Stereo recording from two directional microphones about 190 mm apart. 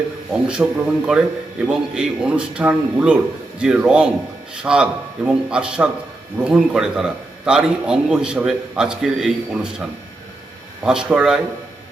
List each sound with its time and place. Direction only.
0.4 s a man's voice: 5° right (ahead or behind)
10.8 s a man's voice: 5° right (ahead or behind)